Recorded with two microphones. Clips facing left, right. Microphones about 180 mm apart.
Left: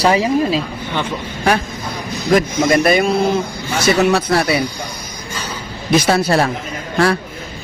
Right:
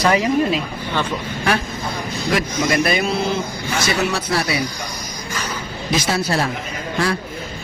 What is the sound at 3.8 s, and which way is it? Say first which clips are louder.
Speech: left 8 dB; 60° left (ahead or behind).